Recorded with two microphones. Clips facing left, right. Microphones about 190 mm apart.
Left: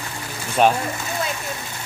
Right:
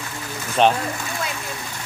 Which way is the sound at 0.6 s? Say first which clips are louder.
Even; 5° left (ahead or behind).